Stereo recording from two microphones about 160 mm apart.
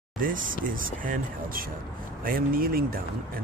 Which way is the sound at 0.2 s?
60° right (ahead or behind).